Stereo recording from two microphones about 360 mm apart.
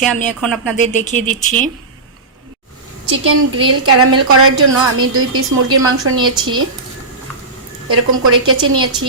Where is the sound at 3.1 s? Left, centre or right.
Right.